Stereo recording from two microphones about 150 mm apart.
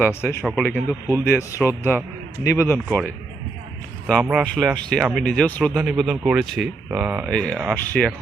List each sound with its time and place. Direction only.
0.1 s speech: 15° left (ahead or behind)
4.0 s speech: 5° right (ahead or behind)
5.2 s speech: 5° left (ahead or behind); by 7.3 s 10° right (ahead or behind)
7.3 s speech: 5° left (ahead or behind)